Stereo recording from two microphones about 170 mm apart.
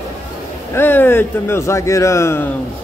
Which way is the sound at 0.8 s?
10° left (ahead or behind).